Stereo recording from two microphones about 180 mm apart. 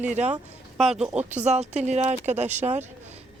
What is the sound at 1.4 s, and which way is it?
Speech, 40° right (ahead or behind).